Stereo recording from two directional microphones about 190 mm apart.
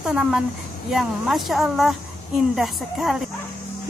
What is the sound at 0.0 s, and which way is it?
A woman's voice, 5° right (ahead or behind).